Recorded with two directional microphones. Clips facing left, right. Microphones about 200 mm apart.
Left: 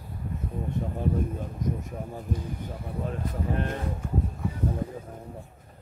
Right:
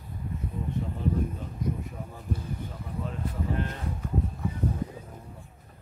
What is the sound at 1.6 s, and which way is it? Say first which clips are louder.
Speech: left 1 dB; 45° left (ahead or behind).